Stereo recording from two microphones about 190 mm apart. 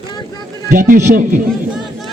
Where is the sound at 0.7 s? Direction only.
40° right (ahead or behind).